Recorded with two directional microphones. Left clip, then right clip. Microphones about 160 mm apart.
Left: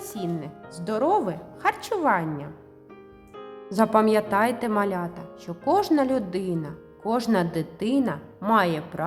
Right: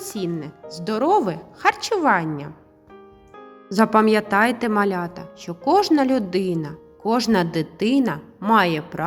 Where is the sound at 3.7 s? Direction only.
15° right (ahead or behind).